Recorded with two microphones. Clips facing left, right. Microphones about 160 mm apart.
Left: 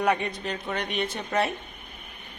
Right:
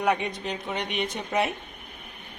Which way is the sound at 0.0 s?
10° right (ahead or behind).